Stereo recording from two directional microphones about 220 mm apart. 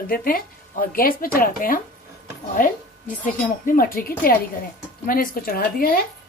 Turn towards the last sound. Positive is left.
turn(degrees=40)  # may be behind; listen again after turning